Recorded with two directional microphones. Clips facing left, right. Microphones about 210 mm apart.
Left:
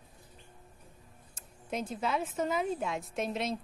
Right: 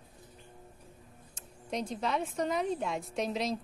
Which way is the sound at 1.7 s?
5° left (ahead or behind).